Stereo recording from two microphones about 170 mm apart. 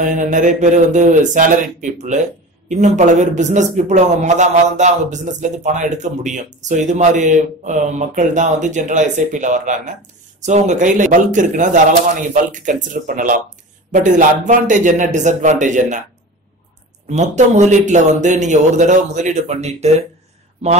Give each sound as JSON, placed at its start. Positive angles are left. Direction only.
{"t": 0.0, "sound": "a man's voice", "side_deg": -50}
{"t": 17.1, "sound": "a man's voice", "side_deg": -45}